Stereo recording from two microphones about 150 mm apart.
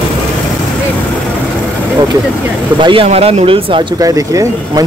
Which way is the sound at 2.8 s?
40° right (ahead or behind).